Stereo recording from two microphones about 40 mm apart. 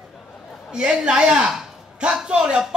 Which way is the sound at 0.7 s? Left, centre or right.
Right.